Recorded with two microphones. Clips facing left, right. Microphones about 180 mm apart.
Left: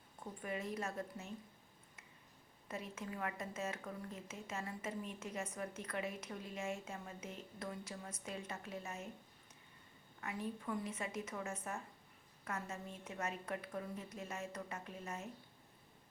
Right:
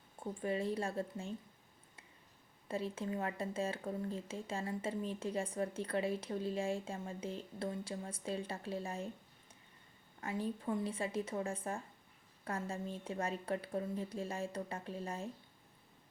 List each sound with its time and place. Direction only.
0.2 s a woman's voice: 30° right (ahead or behind)
2.6 s speech: 30° right (ahead or behind)
10.2 s speech: 30° right (ahead or behind)